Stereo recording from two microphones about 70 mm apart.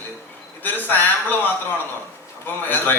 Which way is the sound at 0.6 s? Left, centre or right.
Left.